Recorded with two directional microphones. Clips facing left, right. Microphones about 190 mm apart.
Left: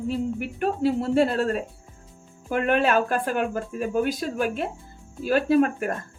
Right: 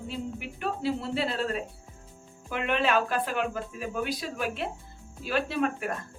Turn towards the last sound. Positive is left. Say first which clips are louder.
# left 8 dB
turn(degrees=45)  # may be behind; listen again after turning